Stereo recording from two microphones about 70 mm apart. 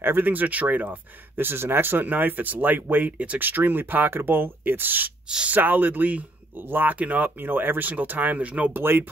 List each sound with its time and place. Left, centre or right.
0.0 s speech: right